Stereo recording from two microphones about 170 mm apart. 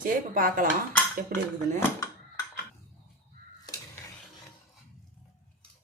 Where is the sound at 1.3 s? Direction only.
55° right (ahead or behind).